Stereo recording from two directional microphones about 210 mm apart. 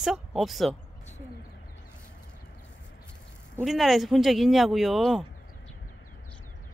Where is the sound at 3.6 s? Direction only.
Centre (ahead or behind).